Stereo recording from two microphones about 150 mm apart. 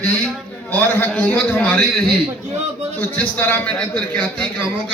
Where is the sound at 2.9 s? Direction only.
10° left (ahead or behind).